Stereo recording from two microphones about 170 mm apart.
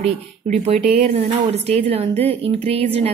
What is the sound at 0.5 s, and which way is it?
A woman's voice, 40° right (ahead or behind).